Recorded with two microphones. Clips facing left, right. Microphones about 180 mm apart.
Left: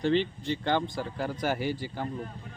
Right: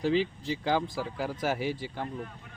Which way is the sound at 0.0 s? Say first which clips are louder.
Left 1 dB; 5° right (ahead or behind).